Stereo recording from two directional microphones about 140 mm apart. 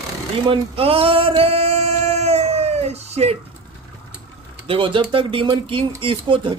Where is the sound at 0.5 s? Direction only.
40° right (ahead or behind).